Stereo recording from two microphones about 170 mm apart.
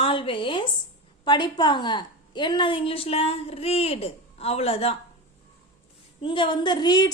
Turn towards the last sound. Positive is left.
turn(degrees=25)  # may be behind; listen again after turning